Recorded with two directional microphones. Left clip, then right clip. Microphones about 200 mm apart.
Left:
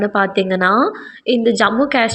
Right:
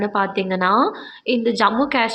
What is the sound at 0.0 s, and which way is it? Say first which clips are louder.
A woman's voice: left 4 dB; 15° left (ahead or behind).